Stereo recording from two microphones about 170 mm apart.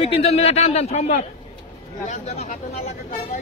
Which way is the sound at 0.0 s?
35° left (ahead or behind).